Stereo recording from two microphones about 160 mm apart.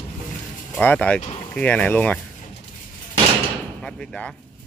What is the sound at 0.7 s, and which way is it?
Speech, 10° left (ahead or behind).